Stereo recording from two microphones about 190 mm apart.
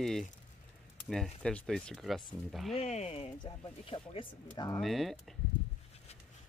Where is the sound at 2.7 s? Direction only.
35° left (ahead or behind).